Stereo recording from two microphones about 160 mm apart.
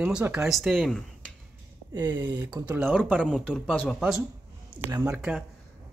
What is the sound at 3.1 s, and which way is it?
Speech, 5° left (ahead or behind).